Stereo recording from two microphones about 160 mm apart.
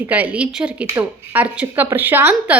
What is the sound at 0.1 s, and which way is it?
A woman's voice, 10° right (ahead or behind).